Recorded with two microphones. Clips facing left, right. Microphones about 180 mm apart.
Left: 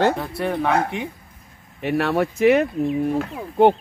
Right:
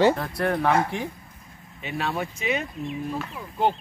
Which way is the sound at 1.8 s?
75° left (ahead or behind).